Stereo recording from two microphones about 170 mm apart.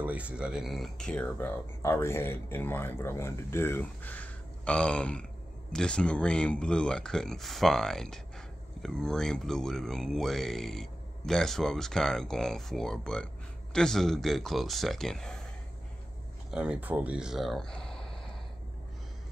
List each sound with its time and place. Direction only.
0.0 s speech: 10° right (ahead or behind)
16.4 s speech: 5° right (ahead or behind)